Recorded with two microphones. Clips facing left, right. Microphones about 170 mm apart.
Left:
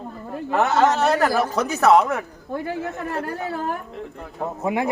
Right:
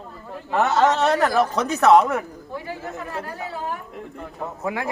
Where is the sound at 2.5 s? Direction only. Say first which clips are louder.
Left 7 dB; 55° left (ahead or behind).